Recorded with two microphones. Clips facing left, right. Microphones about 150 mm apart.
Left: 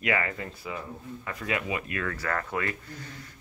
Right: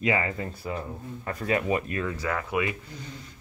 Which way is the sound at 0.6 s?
40° right (ahead or behind).